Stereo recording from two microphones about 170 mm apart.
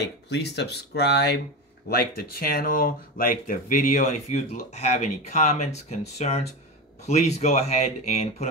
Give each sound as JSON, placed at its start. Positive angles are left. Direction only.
{"t": 0.0, "sound": "speech", "side_deg": 80}